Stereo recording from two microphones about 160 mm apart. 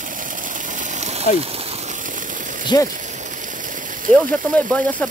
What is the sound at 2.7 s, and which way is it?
Speech, 25° left (ahead or behind).